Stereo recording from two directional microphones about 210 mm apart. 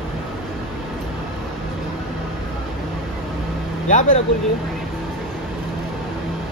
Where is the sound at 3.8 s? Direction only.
35° left (ahead or behind).